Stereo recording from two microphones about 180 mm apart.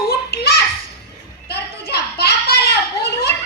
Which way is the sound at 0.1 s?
60° left (ahead or behind).